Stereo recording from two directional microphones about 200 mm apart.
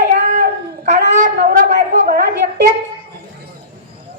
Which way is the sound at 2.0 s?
45° right (ahead or behind).